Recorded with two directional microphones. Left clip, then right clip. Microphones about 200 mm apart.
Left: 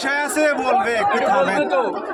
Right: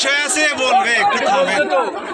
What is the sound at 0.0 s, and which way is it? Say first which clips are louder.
Speech: right 3 dB; 45° left (ahead or behind).